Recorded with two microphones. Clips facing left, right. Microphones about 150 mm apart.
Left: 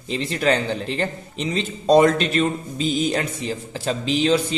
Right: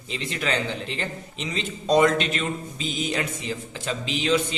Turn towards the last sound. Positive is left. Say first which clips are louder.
# left 5 dB
turn(degrees=35)  # may be behind; listen again after turning